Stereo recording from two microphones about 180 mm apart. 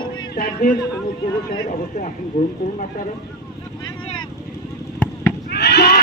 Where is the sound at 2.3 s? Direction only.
50° left (ahead or behind).